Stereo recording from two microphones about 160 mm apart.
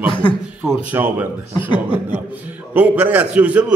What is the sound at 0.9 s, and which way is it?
Speech, 15° right (ahead or behind).